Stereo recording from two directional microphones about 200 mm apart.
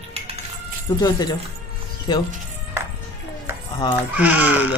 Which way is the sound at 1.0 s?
20° left (ahead or behind).